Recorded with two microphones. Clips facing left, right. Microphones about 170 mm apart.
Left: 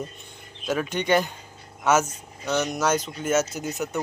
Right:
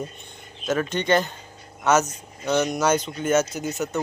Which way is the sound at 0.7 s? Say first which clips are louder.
Right 1 dB; 10° left (ahead or behind).